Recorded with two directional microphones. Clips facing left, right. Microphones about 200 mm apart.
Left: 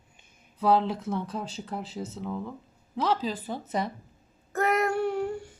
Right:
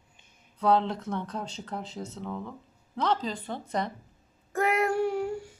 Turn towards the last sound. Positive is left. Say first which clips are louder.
# even
turn(degrees=-10)  # may be behind; listen again after turning